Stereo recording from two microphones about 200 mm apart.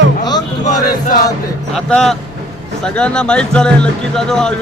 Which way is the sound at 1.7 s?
5° left (ahead or behind).